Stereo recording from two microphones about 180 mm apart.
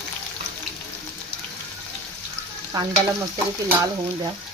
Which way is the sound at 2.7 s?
20° right (ahead or behind).